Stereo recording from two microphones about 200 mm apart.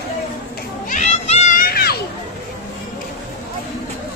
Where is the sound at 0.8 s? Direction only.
35° left (ahead or behind).